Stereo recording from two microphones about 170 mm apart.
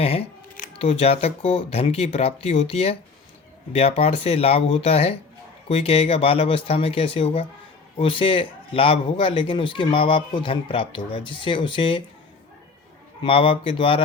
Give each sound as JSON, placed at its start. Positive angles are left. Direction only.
{"t": 0.0, "sound": "a sound", "side_deg": 35}
{"t": 0.8, "sound": "a man's voice", "side_deg": 35}
{"t": 13.2, "sound": "speech", "side_deg": 30}